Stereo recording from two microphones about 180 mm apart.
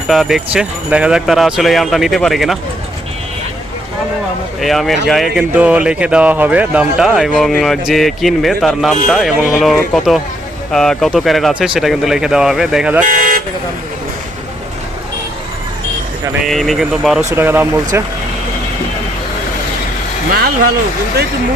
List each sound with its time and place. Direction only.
0.1 s speech: centre (ahead or behind)
4.6 s speech: centre (ahead or behind)
13.1 s vehicle: 50° right (ahead or behind)
16.4 s speech: centre (ahead or behind)
17.2 s speech: 10° right (ahead or behind)